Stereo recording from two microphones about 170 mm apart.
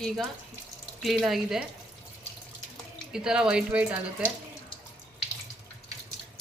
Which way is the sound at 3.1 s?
5° right (ahead or behind).